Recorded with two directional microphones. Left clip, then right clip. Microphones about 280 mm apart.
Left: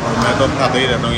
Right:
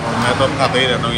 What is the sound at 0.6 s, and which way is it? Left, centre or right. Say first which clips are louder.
Speech: even; centre.